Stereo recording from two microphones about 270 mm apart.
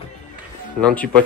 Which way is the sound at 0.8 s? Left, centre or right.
Centre.